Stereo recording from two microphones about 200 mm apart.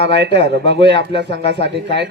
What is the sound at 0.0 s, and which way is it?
Speech, 60° right (ahead or behind).